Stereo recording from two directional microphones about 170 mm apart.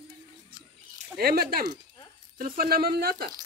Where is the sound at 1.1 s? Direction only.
65° right (ahead or behind).